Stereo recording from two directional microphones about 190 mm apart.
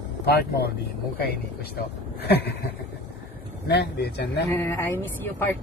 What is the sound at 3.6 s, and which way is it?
Speech, 60° left (ahead or behind).